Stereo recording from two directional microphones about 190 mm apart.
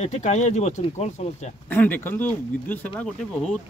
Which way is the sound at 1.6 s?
10° left (ahead or behind).